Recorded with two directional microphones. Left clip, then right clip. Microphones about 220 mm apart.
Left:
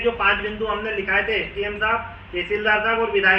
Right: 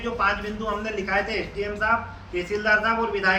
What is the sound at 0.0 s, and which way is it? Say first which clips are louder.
A man's voice: left 5 dB; 10° right (ahead or behind).